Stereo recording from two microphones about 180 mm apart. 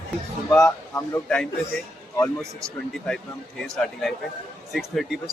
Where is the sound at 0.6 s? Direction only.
15° left (ahead or behind).